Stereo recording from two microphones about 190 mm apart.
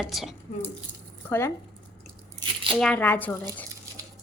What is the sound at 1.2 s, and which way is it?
Speech, 15° left (ahead or behind).